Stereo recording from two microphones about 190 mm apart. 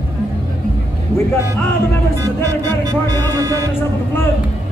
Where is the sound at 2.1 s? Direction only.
15° right (ahead or behind).